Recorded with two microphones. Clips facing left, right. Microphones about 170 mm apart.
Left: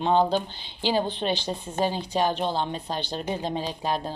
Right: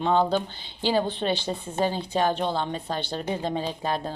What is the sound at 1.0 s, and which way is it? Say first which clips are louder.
Speech: right 1 dB; 55° right (ahead or behind).